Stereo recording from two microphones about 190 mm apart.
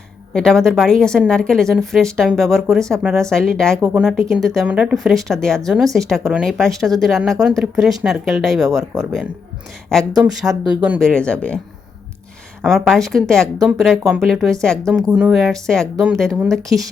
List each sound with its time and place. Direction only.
0.3 s speech: 5° left (ahead or behind)
8.9 s speech: 20° right (ahead or behind)
10.5 s speech: 5° right (ahead or behind)
12.6 s speech: centre (ahead or behind)